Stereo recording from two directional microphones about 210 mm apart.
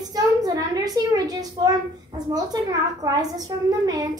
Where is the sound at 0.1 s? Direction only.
20° right (ahead or behind).